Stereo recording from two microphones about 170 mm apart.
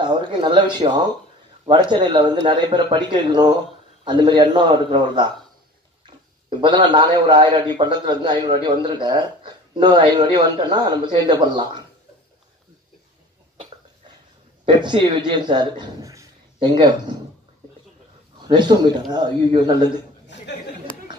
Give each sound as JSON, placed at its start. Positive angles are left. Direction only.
{"t": 0.0, "sound": "speech", "side_deg": -25}
{"t": 6.5, "sound": "speech", "side_deg": -30}
{"t": 14.7, "sound": "speech", "side_deg": -25}
{"t": 18.5, "sound": "speech", "side_deg": -25}
{"t": 20.3, "sound": "chatter", "side_deg": 90}